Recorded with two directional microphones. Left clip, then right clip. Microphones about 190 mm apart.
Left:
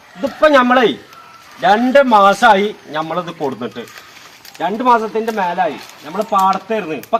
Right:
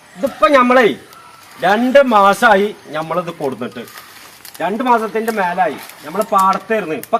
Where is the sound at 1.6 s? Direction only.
20° right (ahead or behind).